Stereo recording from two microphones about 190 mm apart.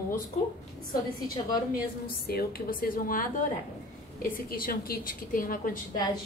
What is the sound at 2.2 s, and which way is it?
A woman's voice, 55° left (ahead or behind).